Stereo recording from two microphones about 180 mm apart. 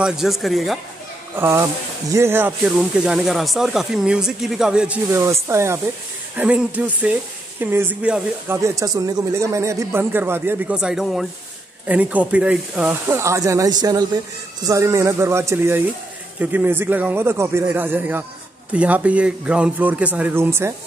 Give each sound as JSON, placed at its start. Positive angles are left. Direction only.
{"t": 0.0, "sound": "speech", "side_deg": 0}
{"t": 1.3, "sound": "speech", "side_deg": -15}
{"t": 5.1, "sound": "speech", "side_deg": -15}